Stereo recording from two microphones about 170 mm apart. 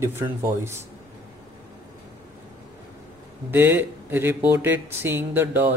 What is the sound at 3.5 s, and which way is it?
Speech, 10° right (ahead or behind).